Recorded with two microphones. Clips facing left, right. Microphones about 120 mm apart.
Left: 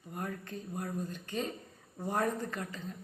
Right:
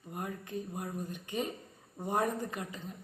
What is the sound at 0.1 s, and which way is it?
Speech, 15° right (ahead or behind).